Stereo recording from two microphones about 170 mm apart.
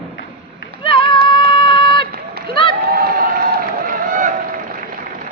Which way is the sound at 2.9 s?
65° right (ahead or behind).